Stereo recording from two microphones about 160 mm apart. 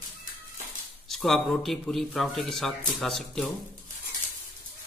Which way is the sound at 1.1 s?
5° left (ahead or behind).